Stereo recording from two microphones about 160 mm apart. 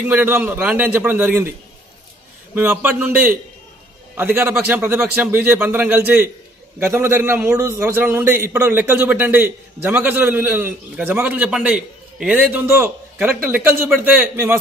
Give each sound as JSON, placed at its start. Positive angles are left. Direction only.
{"t": 0.1, "sound": "a man's voice", "side_deg": -10}
{"t": 2.5, "sound": "a man's voice", "side_deg": -10}